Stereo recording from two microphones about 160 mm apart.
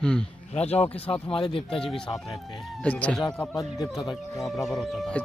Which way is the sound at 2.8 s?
10° left (ahead or behind).